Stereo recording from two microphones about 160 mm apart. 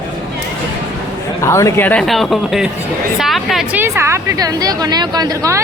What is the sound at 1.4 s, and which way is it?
Speech, 20° left (ahead or behind).